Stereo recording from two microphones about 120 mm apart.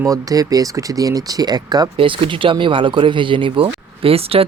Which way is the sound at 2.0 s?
45° right (ahead or behind).